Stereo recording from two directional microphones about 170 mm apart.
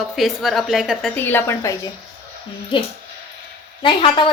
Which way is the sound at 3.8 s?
30° left (ahead or behind).